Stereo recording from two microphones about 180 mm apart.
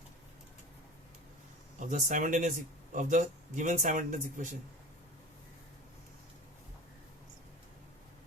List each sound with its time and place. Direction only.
1.8 s speech: 45° right (ahead or behind)